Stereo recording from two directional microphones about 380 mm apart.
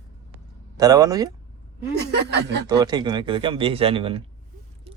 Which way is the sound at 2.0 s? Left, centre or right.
Right.